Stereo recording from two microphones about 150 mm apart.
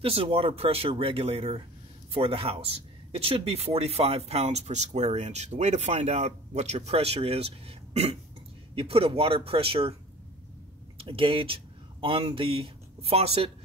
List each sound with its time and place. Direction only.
0.0 s speech: 40° right (ahead or behind)
11.0 s speech: 35° right (ahead or behind)